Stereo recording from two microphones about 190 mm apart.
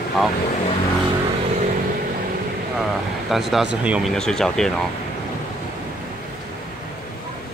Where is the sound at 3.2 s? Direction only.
Centre (ahead or behind).